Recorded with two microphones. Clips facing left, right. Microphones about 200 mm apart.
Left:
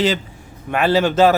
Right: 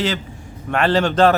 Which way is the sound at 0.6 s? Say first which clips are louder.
Left 1 dB; 5° left (ahead or behind).